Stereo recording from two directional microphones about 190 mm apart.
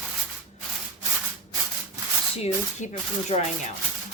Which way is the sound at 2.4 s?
35° left (ahead or behind).